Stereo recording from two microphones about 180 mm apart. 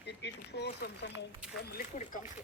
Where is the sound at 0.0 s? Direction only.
70° left (ahead or behind).